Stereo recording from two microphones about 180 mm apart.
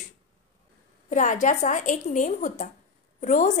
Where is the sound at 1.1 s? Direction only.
45° left (ahead or behind).